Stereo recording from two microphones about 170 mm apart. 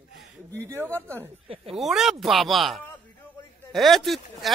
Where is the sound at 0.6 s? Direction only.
15° right (ahead or behind).